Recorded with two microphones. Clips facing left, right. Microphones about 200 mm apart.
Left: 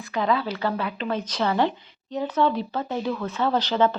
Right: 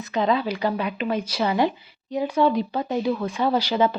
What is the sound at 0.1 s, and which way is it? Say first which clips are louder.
Speech: right 2 dB; 20° right (ahead or behind).